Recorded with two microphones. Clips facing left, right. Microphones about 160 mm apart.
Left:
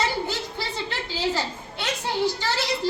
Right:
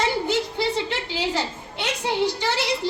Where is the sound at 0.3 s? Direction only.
20° right (ahead or behind).